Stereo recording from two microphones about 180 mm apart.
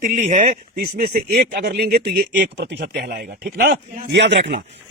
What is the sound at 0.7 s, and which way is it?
Speech, 55° right (ahead or behind).